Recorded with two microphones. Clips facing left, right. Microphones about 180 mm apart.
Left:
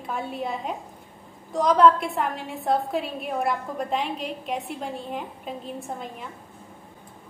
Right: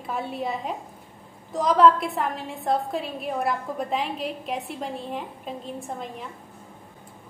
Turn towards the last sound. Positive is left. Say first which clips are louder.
# right 1 dB
turn(degrees=0)  # may be behind; listen again after turning